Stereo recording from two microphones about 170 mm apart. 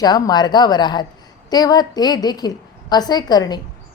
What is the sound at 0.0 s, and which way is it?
A woman's voice, 25° left (ahead or behind).